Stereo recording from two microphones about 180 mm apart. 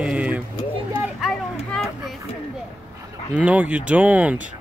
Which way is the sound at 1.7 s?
Centre (ahead or behind).